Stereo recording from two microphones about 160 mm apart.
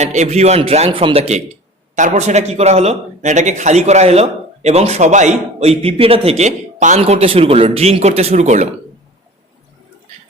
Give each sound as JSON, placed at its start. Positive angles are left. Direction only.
{"t": 0.0, "sound": "speech", "side_deg": -45}
{"t": 2.0, "sound": "speech", "side_deg": -50}
{"t": 7.0, "sound": "speech", "side_deg": -40}